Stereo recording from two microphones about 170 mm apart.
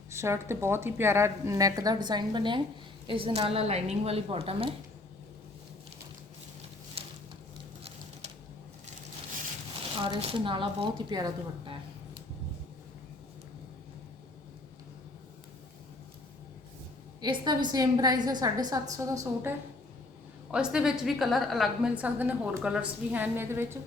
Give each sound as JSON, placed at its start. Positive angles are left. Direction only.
{"t": 0.1, "sound": "a woman's voice", "side_deg": -15}
{"t": 7.0, "sound": "a sound", "side_deg": -35}
{"t": 10.0, "sound": "a woman's voice", "side_deg": -30}
{"t": 17.2, "sound": "a woman's voice", "side_deg": -25}
{"t": 20.5, "sound": "a woman's voice", "side_deg": -5}